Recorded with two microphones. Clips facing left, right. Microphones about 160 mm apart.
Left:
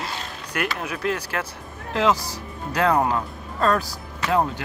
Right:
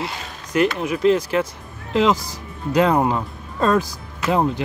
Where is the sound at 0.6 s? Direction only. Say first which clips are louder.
Right 9 dB; 20° right (ahead or behind).